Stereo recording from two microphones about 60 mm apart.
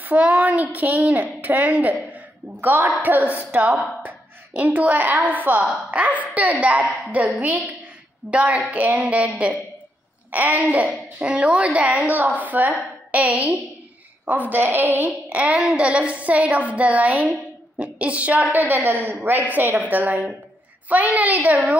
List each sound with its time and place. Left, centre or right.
0.0 s child singing: right
0.7 s a woman's voice: right
2.1 s a sound: right
3.0 s a woman's voice: right
7.3 s a woman's voice: right